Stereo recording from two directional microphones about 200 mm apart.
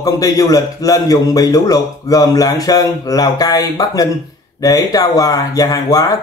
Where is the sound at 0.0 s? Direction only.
20° left (ahead or behind).